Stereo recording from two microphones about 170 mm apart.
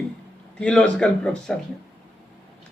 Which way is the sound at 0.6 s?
5° left (ahead or behind).